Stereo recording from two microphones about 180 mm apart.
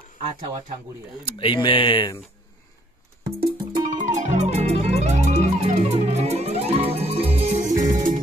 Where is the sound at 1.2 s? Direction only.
30° left (ahead or behind).